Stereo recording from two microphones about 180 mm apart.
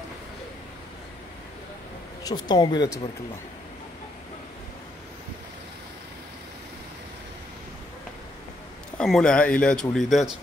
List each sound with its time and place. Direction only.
2.2 s speech: 20° left (ahead or behind)
8.9 s speech: 5° left (ahead or behind)